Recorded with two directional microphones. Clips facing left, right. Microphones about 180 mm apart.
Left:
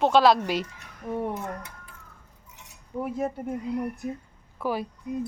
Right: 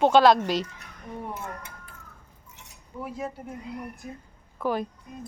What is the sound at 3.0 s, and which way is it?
Speech, 50° left (ahead or behind).